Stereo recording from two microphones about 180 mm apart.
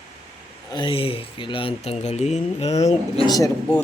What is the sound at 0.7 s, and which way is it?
Speech, 25° left (ahead or behind).